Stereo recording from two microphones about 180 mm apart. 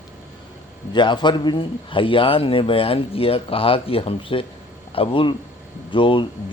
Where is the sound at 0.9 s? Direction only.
25° left (ahead or behind).